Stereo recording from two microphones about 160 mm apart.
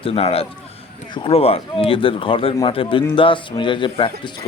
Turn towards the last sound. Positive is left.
turn(degrees=30)  # may be behind; listen again after turning